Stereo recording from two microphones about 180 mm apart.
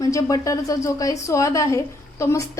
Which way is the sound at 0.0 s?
20° left (ahead or behind).